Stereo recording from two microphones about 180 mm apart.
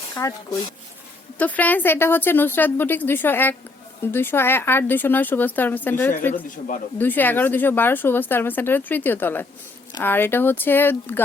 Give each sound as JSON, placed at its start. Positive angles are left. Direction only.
{"t": 0.2, "sound": "speech", "side_deg": 15}
{"t": 1.4, "sound": "speech", "side_deg": 10}